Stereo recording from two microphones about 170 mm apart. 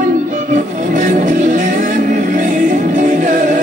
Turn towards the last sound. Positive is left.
turn(degrees=-50)  # may be behind; listen again after turning